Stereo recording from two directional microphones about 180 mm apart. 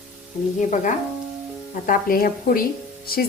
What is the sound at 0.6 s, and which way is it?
Speech, 45° left (ahead or behind).